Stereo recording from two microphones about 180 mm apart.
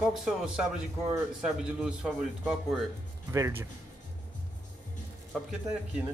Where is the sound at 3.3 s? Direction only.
15° right (ahead or behind).